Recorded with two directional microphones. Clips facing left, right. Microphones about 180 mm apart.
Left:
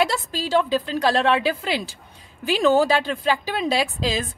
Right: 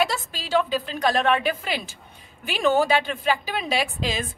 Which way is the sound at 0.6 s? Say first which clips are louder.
Left 2 dB; 35° left (ahead or behind).